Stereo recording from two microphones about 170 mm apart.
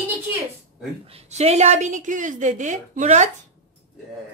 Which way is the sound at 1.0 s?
40° right (ahead or behind).